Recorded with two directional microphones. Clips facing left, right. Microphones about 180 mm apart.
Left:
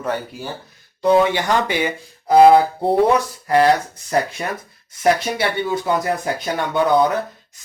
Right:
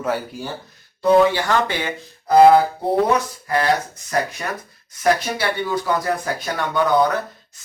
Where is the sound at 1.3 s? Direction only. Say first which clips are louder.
Left 1 dB; 15° left (ahead or behind).